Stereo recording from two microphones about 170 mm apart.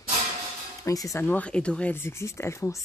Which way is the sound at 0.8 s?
20° left (ahead or behind).